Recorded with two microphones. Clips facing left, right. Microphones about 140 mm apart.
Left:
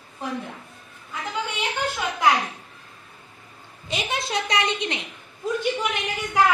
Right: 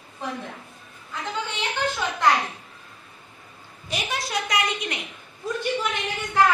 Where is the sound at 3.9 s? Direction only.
25° left (ahead or behind).